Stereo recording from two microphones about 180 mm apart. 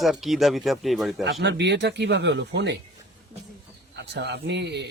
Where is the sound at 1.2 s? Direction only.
75° right (ahead or behind).